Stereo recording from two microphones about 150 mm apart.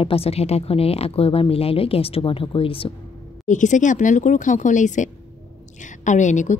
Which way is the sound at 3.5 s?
55° left (ahead or behind).